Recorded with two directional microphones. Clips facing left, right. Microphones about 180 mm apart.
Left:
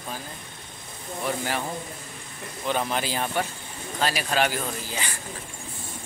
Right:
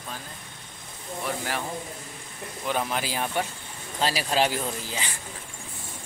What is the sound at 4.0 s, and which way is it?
Speech, 30° right (ahead or behind).